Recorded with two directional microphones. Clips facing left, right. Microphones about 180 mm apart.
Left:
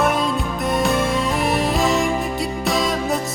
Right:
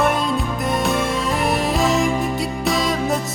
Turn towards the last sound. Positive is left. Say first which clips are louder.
# even
turn(degrees=0)  # may be behind; listen again after turning